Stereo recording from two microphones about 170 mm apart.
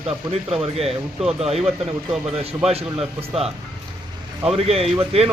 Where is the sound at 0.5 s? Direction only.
35° right (ahead or behind).